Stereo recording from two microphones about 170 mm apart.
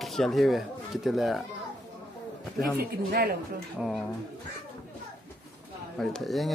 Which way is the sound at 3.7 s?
Centre (ahead or behind).